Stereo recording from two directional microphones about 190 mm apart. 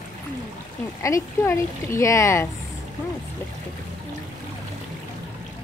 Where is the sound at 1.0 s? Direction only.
15° left (ahead or behind).